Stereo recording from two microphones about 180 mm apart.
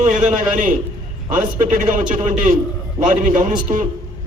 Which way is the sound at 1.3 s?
50° right (ahead or behind).